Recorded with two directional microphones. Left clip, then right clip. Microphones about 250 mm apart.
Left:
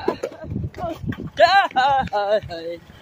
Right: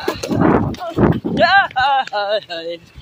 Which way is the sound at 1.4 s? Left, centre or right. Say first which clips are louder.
Right 2 dB; centre.